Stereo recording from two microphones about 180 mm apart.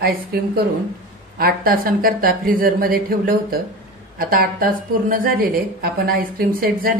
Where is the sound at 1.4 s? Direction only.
55° right (ahead or behind).